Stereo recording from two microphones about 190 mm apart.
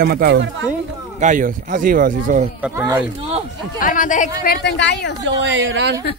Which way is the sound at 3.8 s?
45° left (ahead or behind).